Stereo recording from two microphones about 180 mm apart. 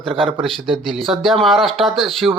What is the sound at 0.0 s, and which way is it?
Speech, 30° right (ahead or behind).